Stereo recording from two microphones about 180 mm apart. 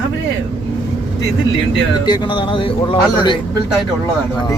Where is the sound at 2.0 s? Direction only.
25° left (ahead or behind).